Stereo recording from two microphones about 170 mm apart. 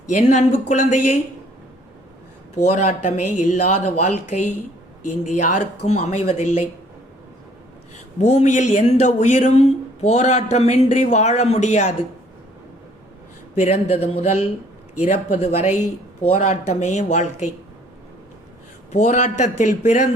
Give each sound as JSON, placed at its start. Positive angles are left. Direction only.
{"t": 0.1, "sound": "speech", "side_deg": 45}
{"t": 2.6, "sound": "speech", "side_deg": 40}
{"t": 8.2, "sound": "speech", "side_deg": 40}
{"t": 13.6, "sound": "speech", "side_deg": 40}
{"t": 18.9, "sound": "speech", "side_deg": 45}